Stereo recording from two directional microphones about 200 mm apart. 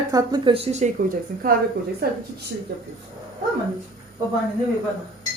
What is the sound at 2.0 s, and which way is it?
Speech, 50° right (ahead or behind).